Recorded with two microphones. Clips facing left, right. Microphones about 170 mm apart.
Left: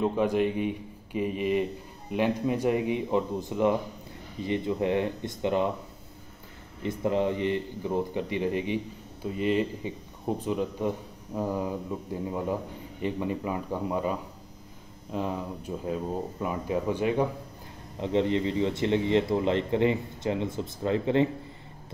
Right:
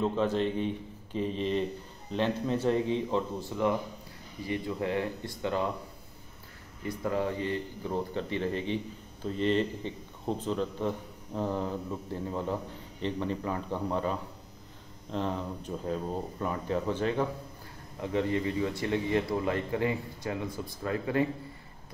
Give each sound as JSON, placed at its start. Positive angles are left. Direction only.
{"t": 0.0, "sound": "speech", "side_deg": 15}
{"t": 6.8, "sound": "speech", "side_deg": 25}